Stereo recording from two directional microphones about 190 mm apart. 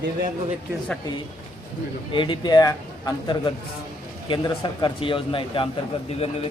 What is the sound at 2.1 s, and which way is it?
Speech, 25° left (ahead or behind).